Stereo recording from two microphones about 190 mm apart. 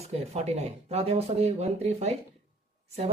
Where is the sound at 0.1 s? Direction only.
35° right (ahead or behind).